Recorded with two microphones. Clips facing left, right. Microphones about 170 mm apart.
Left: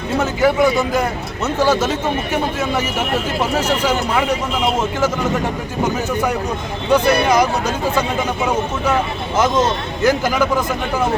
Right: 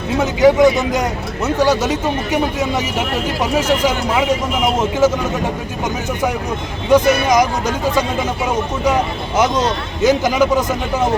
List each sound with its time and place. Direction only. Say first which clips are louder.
0.2 s a man's voice: right 4 dB; 20° right (ahead or behind)
6.9 s a man's voice: right 2 dB; 15° right (ahead or behind)
9.4 s a man's voice: even; 15° right (ahead or behind)